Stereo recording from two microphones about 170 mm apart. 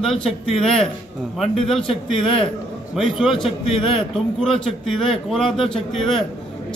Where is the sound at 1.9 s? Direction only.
35° left (ahead or behind).